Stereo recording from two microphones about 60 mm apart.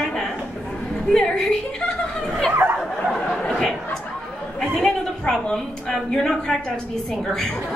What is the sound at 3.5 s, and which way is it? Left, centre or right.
Chatter, centre.